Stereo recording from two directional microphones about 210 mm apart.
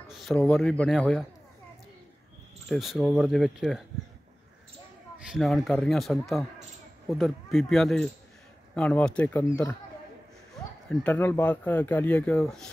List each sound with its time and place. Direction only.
0.1 s a sound: centre (ahead or behind)
0.4 s a man's voice: centre (ahead or behind)
2.7 s a man's voice: centre (ahead or behind)
5.3 s a man's voice: centre (ahead or behind)
10.9 s speech: 10° left (ahead or behind)